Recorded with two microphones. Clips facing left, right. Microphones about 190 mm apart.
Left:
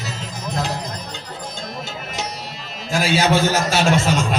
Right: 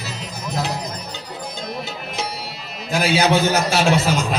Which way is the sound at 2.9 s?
Centre (ahead or behind).